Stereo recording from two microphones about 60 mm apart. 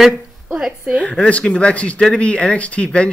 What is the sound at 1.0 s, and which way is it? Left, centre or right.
Speech, centre.